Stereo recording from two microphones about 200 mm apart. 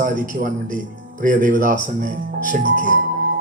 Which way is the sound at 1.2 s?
45° right (ahead or behind).